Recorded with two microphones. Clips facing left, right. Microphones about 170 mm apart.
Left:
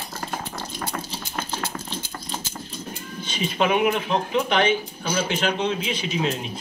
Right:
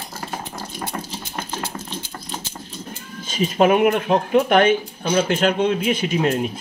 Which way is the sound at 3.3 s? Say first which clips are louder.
Right 6 dB; 45° right (ahead or behind).